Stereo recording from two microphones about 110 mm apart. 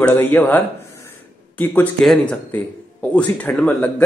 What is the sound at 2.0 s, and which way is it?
Speech, 5° left (ahead or behind).